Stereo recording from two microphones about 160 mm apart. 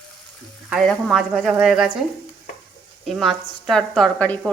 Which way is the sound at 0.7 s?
Centre (ahead or behind).